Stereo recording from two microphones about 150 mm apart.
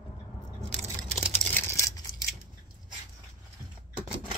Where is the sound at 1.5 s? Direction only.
20° left (ahead or behind).